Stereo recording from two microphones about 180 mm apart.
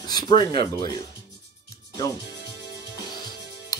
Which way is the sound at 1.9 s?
20° left (ahead or behind).